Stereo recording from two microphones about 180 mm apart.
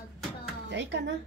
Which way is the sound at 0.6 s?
75° right (ahead or behind).